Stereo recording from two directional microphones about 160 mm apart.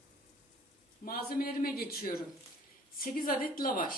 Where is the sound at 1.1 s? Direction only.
65° left (ahead or behind).